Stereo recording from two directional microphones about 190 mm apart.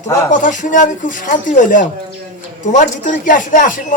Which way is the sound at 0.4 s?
40° left (ahead or behind).